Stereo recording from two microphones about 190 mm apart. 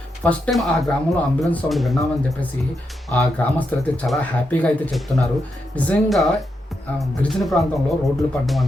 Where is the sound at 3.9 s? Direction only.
5° left (ahead or behind).